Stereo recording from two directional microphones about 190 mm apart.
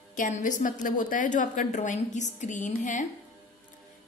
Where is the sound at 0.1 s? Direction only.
45° left (ahead or behind).